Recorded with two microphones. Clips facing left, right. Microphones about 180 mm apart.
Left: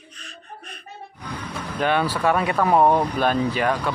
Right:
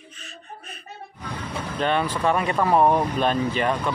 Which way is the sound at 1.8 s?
5° left (ahead or behind).